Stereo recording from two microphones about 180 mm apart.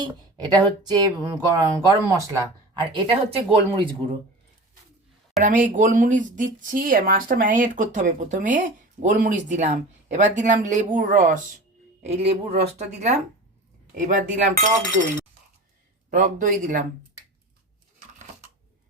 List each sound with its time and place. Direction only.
0.0 s speech: 25° right (ahead or behind)
5.4 s speech: 45° right (ahead or behind)
12.0 s speech: 35° right (ahead or behind)